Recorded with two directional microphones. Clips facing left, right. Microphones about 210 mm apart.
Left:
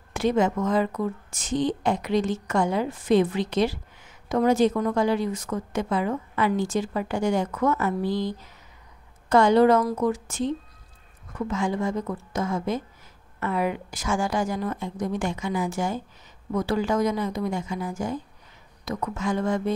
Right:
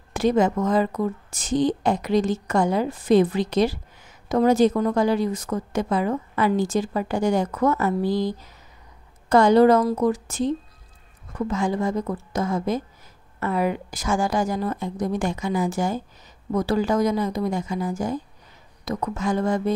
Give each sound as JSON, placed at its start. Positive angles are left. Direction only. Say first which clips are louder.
{"t": 0.1, "sound": "speech", "louder": "right 3 dB", "side_deg": -40}